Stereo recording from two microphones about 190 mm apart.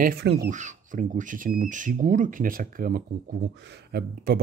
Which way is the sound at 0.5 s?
40° right (ahead or behind).